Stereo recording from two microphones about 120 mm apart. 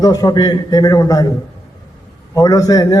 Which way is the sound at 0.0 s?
30° left (ahead or behind).